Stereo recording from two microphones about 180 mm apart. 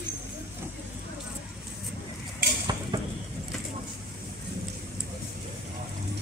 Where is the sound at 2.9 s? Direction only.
20° right (ahead or behind).